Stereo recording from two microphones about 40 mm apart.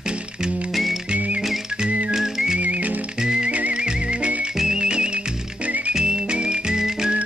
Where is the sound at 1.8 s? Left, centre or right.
Right.